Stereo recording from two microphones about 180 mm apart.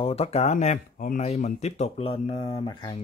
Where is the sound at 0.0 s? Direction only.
35° left (ahead or behind).